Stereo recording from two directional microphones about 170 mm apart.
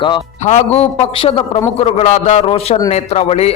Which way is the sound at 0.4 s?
40° left (ahead or behind).